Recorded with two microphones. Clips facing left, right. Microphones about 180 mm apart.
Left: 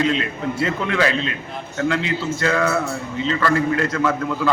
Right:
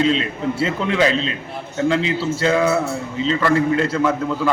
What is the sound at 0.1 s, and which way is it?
A man's voice, 30° right (ahead or behind).